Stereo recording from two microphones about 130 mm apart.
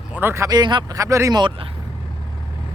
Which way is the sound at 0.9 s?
25° right (ahead or behind).